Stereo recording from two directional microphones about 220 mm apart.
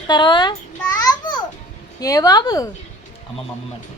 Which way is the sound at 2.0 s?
15° left (ahead or behind).